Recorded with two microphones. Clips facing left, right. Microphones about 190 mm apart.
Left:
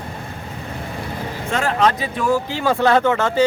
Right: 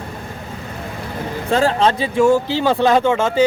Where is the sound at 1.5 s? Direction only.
30° right (ahead or behind).